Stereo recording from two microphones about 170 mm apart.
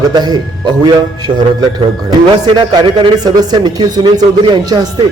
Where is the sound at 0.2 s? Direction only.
25° right (ahead or behind).